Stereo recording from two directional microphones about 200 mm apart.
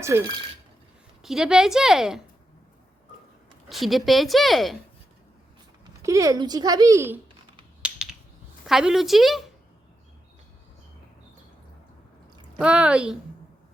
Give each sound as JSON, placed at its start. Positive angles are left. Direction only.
{"t": 0.1, "sound": "speech", "side_deg": -15}
{"t": 1.2, "sound": "a woman's voice", "side_deg": 0}
{"t": 3.7, "sound": "a woman's voice", "side_deg": 0}
{"t": 6.0, "sound": "speech", "side_deg": -15}
{"t": 7.8, "sound": "a sound", "side_deg": -5}
{"t": 8.6, "sound": "a woman's voice", "side_deg": 0}
{"t": 12.5, "sound": "a woman's voice", "side_deg": -5}